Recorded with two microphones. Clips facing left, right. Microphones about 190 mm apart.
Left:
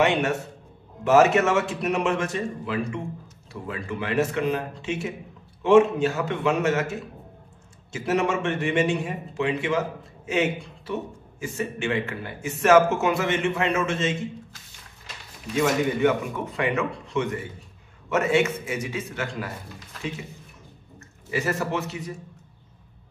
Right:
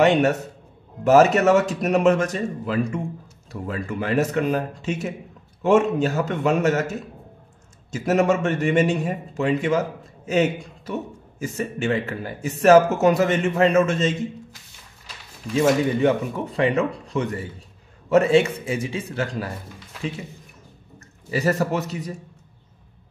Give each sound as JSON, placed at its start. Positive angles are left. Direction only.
{"t": 0.0, "sound": "a man's voice", "side_deg": -40}
{"t": 15.5, "sound": "a man's voice", "side_deg": -30}
{"t": 21.3, "sound": "a man's voice", "side_deg": -35}